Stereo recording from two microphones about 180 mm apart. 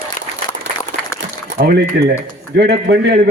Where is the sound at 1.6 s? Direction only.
55° right (ahead or behind).